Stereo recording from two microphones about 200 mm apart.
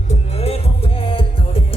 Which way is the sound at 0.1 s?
30° left (ahead or behind).